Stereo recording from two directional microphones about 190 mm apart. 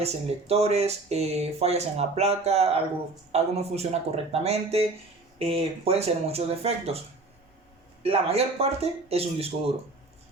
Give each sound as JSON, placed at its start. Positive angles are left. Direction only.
{"t": 0.0, "sound": "speech", "side_deg": -30}
{"t": 8.0, "sound": "speech", "side_deg": -30}